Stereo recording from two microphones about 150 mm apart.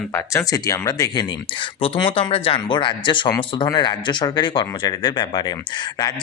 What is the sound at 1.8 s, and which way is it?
Speech, 40° left (ahead or behind).